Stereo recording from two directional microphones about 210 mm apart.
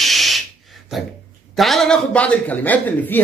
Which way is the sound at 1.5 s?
Centre (ahead or behind).